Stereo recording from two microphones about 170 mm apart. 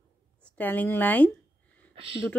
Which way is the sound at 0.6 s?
10° left (ahead or behind).